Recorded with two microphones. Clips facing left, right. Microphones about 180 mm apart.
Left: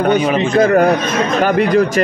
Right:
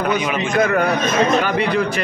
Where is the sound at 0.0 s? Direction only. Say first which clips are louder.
Left 6 dB; 35° left (ahead or behind).